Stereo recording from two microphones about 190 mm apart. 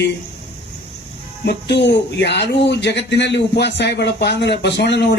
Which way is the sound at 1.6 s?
60° left (ahead or behind).